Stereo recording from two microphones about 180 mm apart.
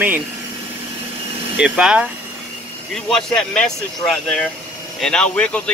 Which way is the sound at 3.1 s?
5° left (ahead or behind).